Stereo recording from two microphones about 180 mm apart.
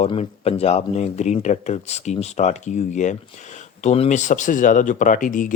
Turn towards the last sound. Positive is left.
turn(degrees=45)  # may be behind; listen again after turning